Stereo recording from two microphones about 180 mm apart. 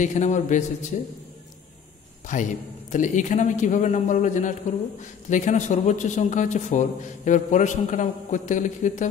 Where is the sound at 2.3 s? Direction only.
45° left (ahead or behind).